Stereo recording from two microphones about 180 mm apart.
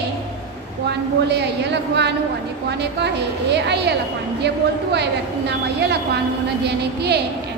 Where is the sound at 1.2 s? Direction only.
70° right (ahead or behind).